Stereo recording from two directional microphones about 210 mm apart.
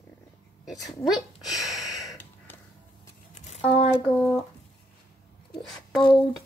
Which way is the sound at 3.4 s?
30° left (ahead or behind).